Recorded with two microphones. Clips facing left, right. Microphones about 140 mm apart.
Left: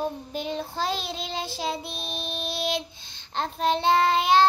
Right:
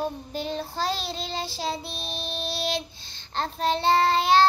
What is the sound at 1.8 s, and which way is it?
Speech, 50° left (ahead or behind).